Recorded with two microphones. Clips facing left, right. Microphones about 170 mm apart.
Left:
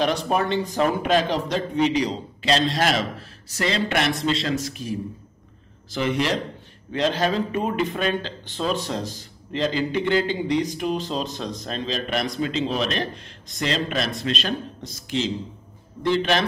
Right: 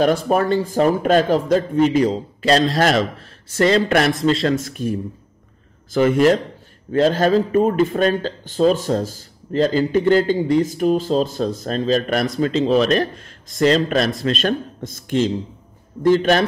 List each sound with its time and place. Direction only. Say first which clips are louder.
0.3 s speech: right 5 dB; 45° right (ahead or behind)